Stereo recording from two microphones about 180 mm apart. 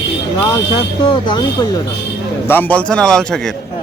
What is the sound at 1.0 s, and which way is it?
Speech, 25° left (ahead or behind).